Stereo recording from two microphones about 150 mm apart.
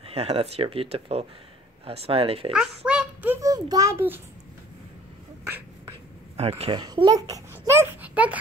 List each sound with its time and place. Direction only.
0.0 s speech: 40° right (ahead or behind)
2.5 s a sound: 5° right (ahead or behind)
3.3 s a child's voice: 25° right (ahead or behind)
6.7 s speech: 30° right (ahead or behind); by 8.4 s 10° right (ahead or behind)